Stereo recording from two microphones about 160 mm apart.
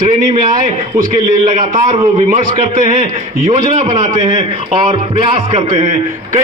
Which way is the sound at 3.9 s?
45° right (ahead or behind).